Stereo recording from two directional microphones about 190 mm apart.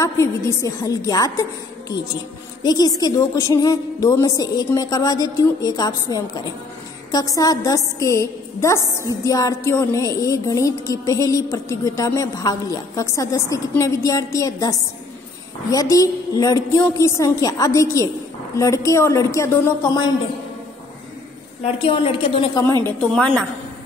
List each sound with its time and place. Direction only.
0.0 s a woman's voice: 15° left (ahead or behind)
21.8 s a woman's voice: 30° left (ahead or behind)
22.8 s a woman's voice: 5° left (ahead or behind)